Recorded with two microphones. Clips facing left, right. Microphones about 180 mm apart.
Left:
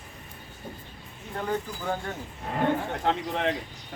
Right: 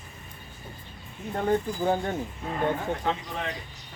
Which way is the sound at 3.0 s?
65° left (ahead or behind).